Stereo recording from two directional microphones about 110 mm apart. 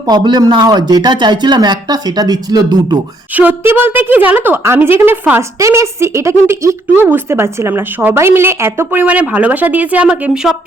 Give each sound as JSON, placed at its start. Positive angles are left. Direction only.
{"t": 0.1, "sound": "speech", "side_deg": -40}
{"t": 3.3, "sound": "a woman's voice", "side_deg": -15}